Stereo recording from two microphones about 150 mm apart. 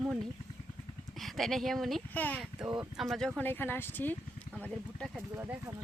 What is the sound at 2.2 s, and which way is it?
Speech, 10° left (ahead or behind).